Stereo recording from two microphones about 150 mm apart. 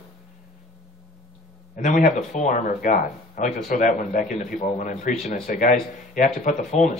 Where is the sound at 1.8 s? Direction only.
55° left (ahead or behind).